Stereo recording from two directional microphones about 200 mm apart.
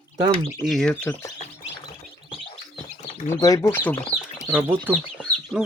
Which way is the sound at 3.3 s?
15° left (ahead or behind).